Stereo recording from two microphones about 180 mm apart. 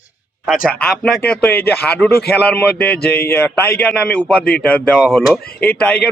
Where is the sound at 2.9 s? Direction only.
60° left (ahead or behind).